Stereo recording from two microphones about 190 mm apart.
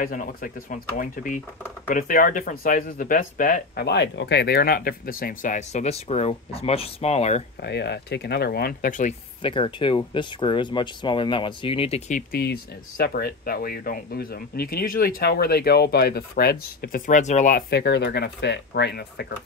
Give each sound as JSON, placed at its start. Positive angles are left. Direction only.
{"t": 0.0, "sound": "speech", "side_deg": 45}
{"t": 7.6, "sound": "speech", "side_deg": 60}
{"t": 9.4, "sound": "speech", "side_deg": 25}
{"t": 12.2, "sound": "speech", "side_deg": 50}